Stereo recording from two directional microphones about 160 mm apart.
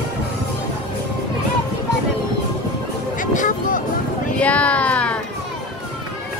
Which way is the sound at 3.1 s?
55° left (ahead or behind).